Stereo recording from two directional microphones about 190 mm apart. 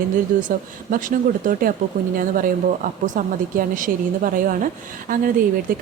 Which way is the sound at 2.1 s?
45° right (ahead or behind).